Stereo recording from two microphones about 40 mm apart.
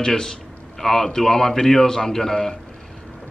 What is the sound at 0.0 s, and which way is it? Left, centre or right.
Speech, centre.